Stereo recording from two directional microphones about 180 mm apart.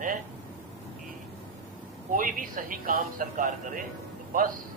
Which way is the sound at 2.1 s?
50° right (ahead or behind).